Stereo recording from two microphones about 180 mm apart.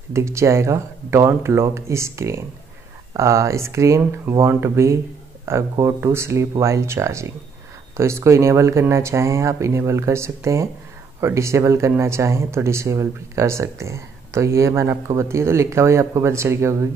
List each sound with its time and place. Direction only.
0.1 s speech: 15° right (ahead or behind)